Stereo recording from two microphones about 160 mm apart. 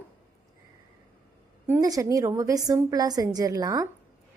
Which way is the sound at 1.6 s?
20° right (ahead or behind).